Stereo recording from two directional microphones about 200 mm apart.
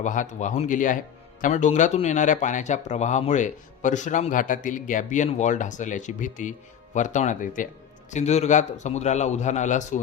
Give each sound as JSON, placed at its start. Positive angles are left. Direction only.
{"t": 0.0, "sound": "speech", "side_deg": 40}